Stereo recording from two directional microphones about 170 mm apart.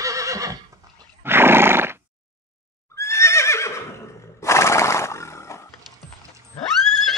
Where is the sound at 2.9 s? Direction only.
15° left (ahead or behind).